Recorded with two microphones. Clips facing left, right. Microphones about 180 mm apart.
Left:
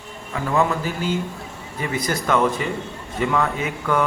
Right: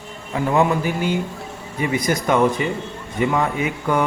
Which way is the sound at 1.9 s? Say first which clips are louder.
Right 2 dB; 15° right (ahead or behind).